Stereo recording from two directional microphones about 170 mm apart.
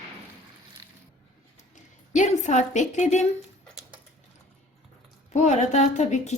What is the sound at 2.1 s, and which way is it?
A woman's voice, 45° left (ahead or behind).